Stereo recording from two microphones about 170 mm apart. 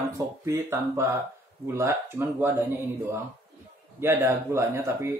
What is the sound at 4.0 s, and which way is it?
Speech, 15° right (ahead or behind).